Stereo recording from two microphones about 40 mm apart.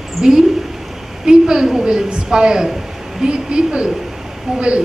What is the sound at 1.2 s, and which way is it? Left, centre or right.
A woman's voice, centre.